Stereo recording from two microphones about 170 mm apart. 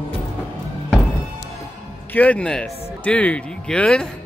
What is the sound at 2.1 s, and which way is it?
Speech, 10° left (ahead or behind).